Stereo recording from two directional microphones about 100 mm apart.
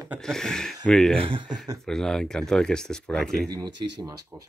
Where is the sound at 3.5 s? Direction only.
45° right (ahead or behind).